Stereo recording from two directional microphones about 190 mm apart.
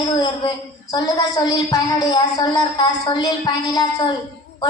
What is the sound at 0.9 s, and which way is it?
A woman's voice, 20° left (ahead or behind).